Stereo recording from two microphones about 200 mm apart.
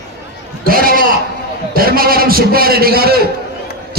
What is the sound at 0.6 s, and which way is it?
A man's voice, 45° right (ahead or behind).